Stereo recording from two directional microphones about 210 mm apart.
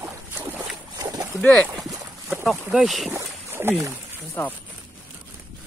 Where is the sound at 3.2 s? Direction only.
10° right (ahead or behind).